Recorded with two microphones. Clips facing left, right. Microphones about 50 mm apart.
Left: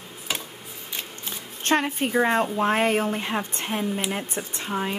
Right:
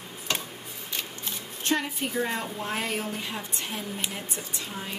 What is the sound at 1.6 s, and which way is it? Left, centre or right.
A woman's voice, left.